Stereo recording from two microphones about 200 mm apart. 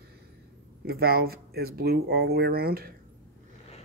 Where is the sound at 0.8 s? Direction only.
50° right (ahead or behind).